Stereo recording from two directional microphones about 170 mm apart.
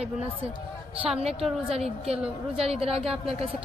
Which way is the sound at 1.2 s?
35° right (ahead or behind).